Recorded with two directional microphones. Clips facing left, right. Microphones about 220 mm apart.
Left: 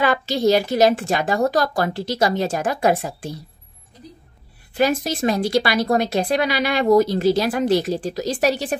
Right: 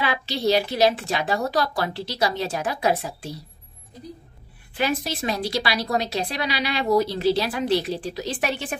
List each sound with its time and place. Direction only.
0.0 s a woman's voice: 45° left (ahead or behind)
4.7 s a woman's voice: 45° left (ahead or behind)